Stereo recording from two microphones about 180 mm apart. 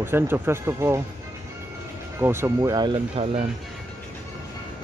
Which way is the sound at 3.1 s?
35° right (ahead or behind).